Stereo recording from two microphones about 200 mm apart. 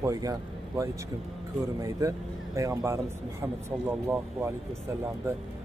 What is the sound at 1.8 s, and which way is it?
A man's voice, 15° right (ahead or behind).